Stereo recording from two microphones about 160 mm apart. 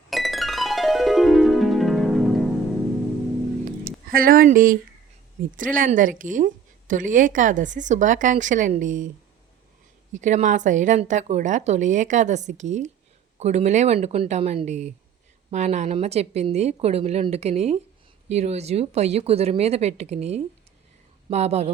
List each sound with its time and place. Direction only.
0.1 s music: centre (ahead or behind)
4.1 s a woman's voice: 65° right (ahead or behind)
10.1 s a woman's voice: 50° right (ahead or behind)